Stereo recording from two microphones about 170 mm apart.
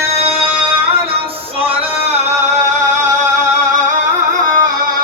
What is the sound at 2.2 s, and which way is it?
Music, 45° right (ahead or behind).